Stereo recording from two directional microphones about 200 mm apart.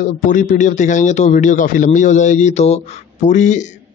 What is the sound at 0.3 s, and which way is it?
A man's voice, 40° left (ahead or behind).